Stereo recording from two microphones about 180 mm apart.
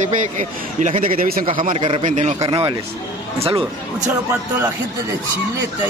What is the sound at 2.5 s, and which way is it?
Speech, 25° right (ahead or behind).